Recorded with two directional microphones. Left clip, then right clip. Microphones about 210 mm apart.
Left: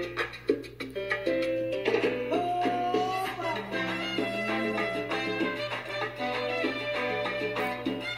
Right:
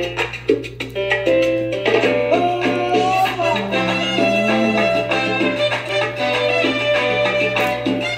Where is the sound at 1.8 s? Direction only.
40° left (ahead or behind).